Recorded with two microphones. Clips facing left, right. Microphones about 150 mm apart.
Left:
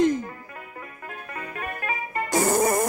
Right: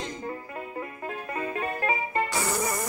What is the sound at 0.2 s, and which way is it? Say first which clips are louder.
Music: right 3 dB; 25° right (ahead or behind).